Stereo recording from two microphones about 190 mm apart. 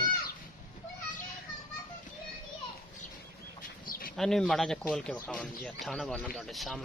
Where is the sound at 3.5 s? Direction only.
50° left (ahead or behind).